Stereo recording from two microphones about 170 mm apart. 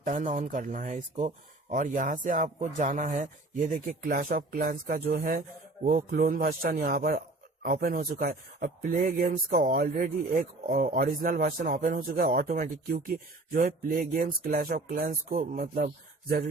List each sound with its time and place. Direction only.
0.0 s a man's voice: 50° right (ahead or behind)